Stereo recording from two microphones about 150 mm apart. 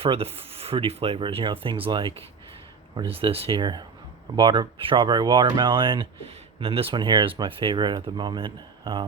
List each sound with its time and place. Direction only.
0.0 s speech: 40° right (ahead or behind)